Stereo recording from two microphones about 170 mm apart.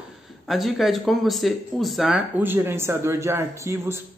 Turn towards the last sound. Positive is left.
turn(degrees=-15)  # may be behind; listen again after turning